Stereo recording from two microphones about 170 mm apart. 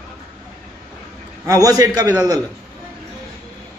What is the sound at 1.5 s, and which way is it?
Speech, 20° right (ahead or behind).